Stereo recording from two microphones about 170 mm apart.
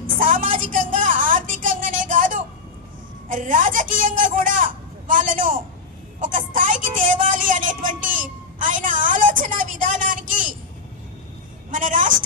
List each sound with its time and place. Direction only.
0.0 s a sound: 50° right (ahead or behind)
3.3 s speech: 50° right (ahead or behind)
6.2 s speech: 50° right (ahead or behind)
11.7 s speech: 50° right (ahead or behind)